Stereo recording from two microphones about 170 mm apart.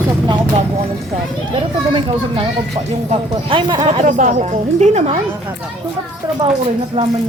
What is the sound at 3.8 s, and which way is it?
A woman's voice, 45° right (ahead or behind).